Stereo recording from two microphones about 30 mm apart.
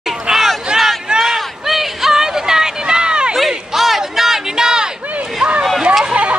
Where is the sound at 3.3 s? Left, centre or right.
Centre.